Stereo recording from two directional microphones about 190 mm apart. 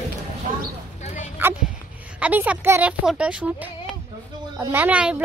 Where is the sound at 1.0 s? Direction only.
40° left (ahead or behind).